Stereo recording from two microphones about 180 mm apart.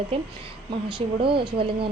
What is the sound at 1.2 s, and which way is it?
Speech, 30° right (ahead or behind).